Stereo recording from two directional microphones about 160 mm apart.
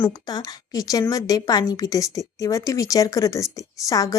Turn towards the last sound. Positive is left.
turn(degrees=20)  # may be behind; listen again after turning